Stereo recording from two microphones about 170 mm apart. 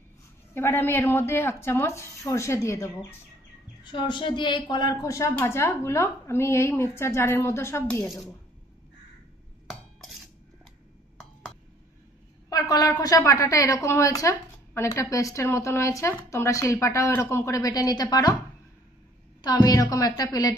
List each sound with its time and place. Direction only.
0.6 s a woman's voice: 15° left (ahead or behind)
3.8 s a woman's voice: 30° left (ahead or behind); by 8.2 s 10° left (ahead or behind)
12.4 s a woman's voice: 20° left (ahead or behind)
19.4 s a woman's voice: 20° left (ahead or behind)